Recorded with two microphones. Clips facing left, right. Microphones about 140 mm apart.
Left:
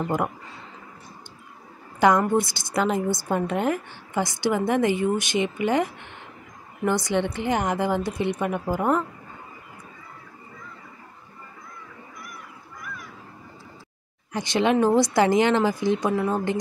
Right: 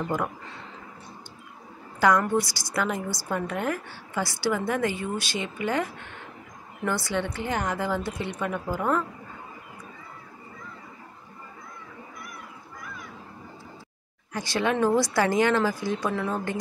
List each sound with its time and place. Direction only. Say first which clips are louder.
2.0 s a woman's voice: left 3 dB; 20° left (ahead or behind)
14.3 s a woman's voice: left 5 dB; 20° left (ahead or behind)